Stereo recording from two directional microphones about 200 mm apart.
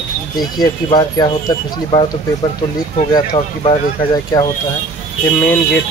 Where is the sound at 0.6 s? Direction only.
20° left (ahead or behind).